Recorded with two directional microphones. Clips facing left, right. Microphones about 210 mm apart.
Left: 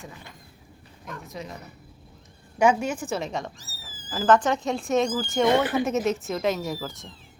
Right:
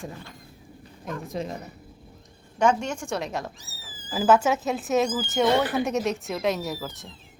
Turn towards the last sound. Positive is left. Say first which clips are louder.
# left 1 dB
turn(degrees=0)  # may be behind; listen again after turning